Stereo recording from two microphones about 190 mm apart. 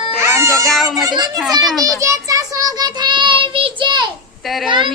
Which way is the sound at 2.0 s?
15° right (ahead or behind).